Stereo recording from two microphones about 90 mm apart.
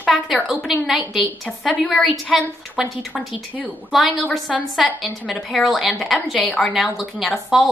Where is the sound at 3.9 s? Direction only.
Centre (ahead or behind).